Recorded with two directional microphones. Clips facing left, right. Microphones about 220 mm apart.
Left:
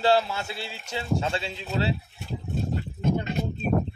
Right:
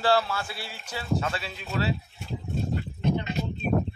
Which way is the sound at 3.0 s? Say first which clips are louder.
Left 1 dB; 45° left (ahead or behind).